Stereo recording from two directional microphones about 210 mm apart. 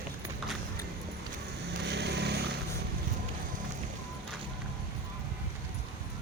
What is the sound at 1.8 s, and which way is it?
Vehicle, 55° right (ahead or behind).